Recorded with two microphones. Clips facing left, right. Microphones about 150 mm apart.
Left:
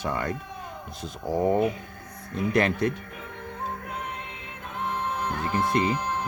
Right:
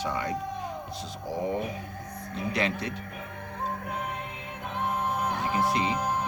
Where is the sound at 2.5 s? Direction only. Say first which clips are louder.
Left 7 dB; 50° left (ahead or behind).